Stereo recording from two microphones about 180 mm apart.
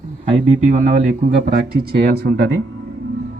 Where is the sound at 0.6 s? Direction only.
45° right (ahead or behind).